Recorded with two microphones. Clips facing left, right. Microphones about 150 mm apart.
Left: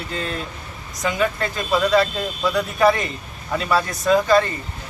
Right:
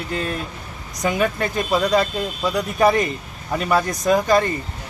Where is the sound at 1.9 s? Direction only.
15° right (ahead or behind).